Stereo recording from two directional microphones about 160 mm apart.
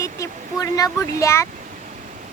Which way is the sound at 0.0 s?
20° left (ahead or behind).